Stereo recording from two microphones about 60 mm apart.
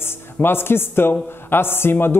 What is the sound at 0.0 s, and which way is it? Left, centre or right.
A man's voice, left.